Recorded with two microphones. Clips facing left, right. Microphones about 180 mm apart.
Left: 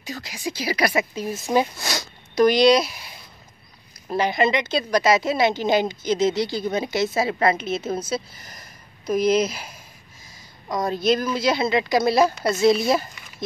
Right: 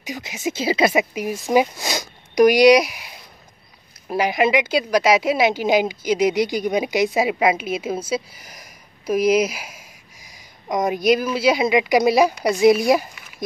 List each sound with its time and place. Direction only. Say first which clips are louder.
0.0 s speech: right 4 dB; 20° right (ahead or behind)
4.1 s speech: right 2 dB; 10° right (ahead or behind)